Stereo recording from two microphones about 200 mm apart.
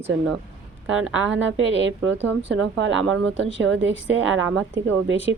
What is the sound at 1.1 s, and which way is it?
A woman's voice, 70° right (ahead or behind).